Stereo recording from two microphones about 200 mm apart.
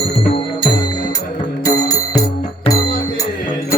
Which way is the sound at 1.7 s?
20° left (ahead or behind).